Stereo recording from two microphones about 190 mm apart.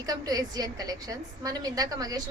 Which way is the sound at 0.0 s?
20° right (ahead or behind).